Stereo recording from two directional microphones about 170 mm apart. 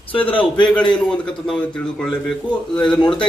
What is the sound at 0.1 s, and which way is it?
Speech, 30° left (ahead or behind).